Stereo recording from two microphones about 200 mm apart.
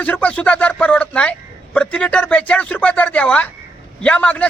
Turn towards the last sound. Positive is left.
turn(degrees=5)  # may be behind; listen again after turning